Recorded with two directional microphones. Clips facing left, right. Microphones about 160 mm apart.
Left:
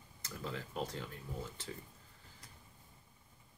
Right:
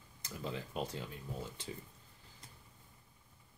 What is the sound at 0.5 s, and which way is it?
Speech, 15° right (ahead or behind).